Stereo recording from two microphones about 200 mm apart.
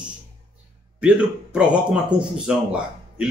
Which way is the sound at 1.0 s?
5° right (ahead or behind).